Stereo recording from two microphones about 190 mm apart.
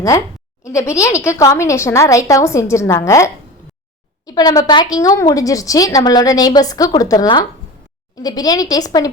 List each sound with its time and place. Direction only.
0.6 s speech: 15° left (ahead or behind)
4.3 s a woman's voice: 20° left (ahead or behind)